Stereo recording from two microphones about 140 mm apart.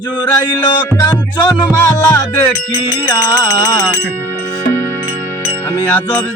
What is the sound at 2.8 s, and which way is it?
Music, 25° left (ahead or behind).